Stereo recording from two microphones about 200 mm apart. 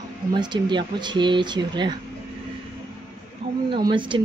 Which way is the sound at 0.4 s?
20° right (ahead or behind).